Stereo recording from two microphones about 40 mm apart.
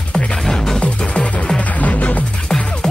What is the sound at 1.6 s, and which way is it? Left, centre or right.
Music, left.